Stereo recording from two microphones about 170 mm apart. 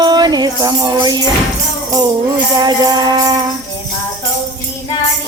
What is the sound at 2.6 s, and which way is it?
Music, 25° right (ahead or behind).